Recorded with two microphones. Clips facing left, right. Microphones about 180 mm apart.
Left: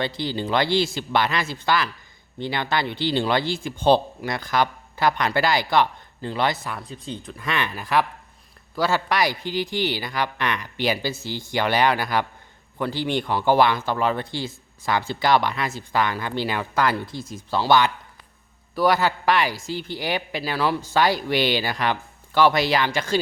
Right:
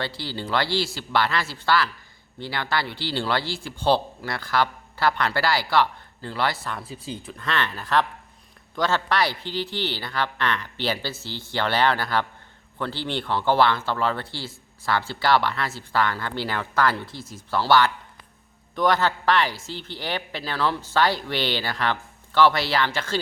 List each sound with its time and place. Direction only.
0.0 s speech: 20° left (ahead or behind)
6.7 s speech: 5° right (ahead or behind)
7.3 s speech: 10° left (ahead or behind)